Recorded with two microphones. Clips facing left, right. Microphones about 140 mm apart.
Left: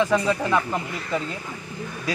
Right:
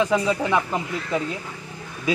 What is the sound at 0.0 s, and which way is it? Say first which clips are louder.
Speech: even; 10° right (ahead or behind).